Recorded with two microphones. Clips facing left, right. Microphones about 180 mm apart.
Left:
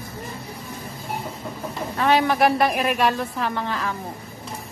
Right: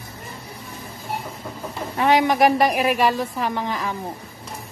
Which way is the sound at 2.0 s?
15° right (ahead or behind).